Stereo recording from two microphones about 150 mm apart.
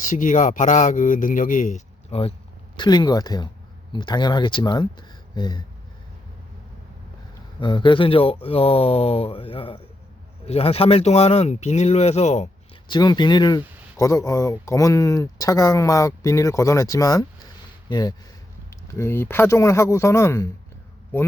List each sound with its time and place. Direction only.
0.1 s speech: 60° left (ahead or behind); by 2.3 s 45° left (ahead or behind)
2.7 s speech: 30° left (ahead or behind)
7.6 s speech: 30° left (ahead or behind); by 12.5 s 50° left (ahead or behind)
12.9 s speech: 30° left (ahead or behind)